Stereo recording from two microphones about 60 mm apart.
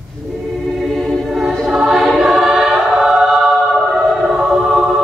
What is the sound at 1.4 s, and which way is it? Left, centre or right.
Music, centre.